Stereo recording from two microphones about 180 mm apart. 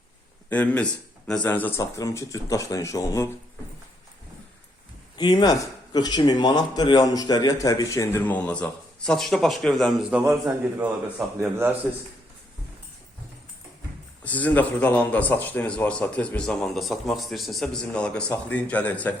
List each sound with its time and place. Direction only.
0.5 s a man's voice: 10° left (ahead or behind)
5.1 s speech: 25° left (ahead or behind); by 10.2 s centre (ahead or behind)
11.3 s speech: 10° right (ahead or behind)
14.3 s a man's voice: 10° left (ahead or behind)